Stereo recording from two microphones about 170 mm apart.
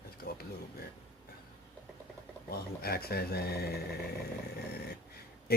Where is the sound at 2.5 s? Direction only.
65° left (ahead or behind).